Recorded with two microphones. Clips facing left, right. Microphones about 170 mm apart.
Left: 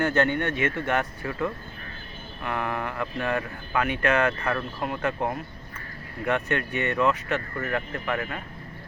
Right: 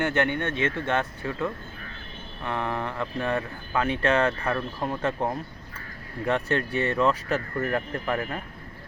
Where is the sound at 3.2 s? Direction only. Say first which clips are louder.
Even; 25° right (ahead or behind).